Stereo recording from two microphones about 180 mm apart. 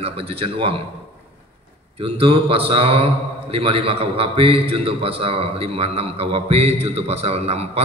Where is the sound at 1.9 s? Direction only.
30° right (ahead or behind).